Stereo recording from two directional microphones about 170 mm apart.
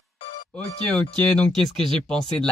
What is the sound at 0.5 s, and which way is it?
Speech, 5° left (ahead or behind).